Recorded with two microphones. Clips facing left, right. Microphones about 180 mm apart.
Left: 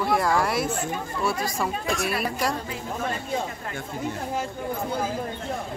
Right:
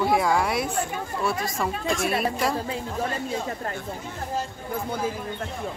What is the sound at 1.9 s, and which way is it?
Speech, 25° right (ahead or behind).